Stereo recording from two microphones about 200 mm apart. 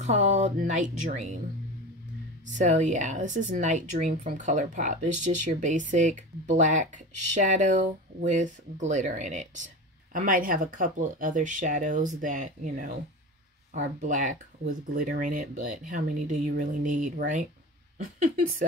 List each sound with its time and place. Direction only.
0.0 s speech: 35° right (ahead or behind)
2.4 s speech: 35° right (ahead or behind)